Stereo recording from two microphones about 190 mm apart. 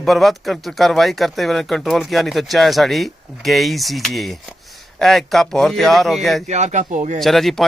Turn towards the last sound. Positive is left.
turn(degrees=0)  # may be behind; listen again after turning